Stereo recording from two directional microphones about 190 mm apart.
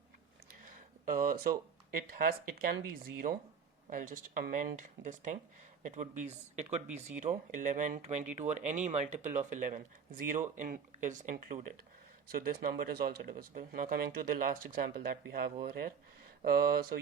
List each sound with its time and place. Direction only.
1.1 s speech: 45° right (ahead or behind)